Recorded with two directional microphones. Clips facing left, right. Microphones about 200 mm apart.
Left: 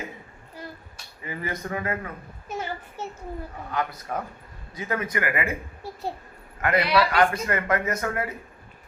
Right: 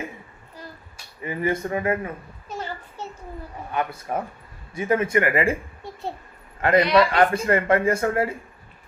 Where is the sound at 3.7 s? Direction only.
25° right (ahead or behind).